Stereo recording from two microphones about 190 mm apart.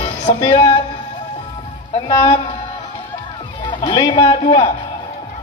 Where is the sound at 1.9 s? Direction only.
25° left (ahead or behind).